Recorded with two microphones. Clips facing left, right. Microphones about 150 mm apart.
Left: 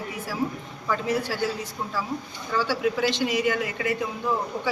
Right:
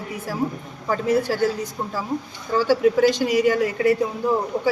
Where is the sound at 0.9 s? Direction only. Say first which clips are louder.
Right 5 dB; 45° right (ahead or behind).